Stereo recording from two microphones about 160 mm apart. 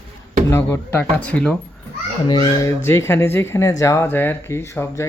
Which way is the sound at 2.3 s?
30° left (ahead or behind).